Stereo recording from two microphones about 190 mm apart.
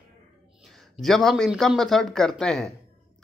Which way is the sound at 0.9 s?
Centre (ahead or behind).